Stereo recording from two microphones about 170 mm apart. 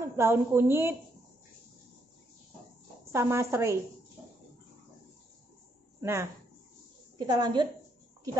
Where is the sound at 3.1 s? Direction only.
15° right (ahead or behind).